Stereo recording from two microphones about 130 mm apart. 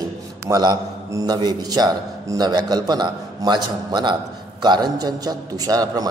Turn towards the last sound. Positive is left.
turn(degrees=-30)  # may be behind; listen again after turning